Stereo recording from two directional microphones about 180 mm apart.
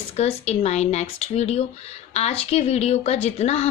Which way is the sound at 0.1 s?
35° left (ahead or behind).